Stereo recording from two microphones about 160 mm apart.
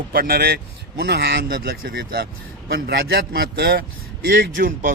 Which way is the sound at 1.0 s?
90° right.